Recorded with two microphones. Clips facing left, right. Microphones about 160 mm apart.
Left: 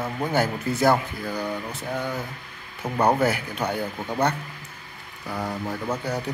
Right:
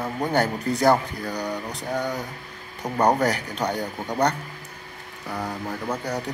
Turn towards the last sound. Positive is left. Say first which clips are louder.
# even
turn(degrees=5)  # may be behind; listen again after turning